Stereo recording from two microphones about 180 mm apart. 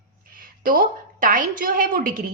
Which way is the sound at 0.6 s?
50° right (ahead or behind).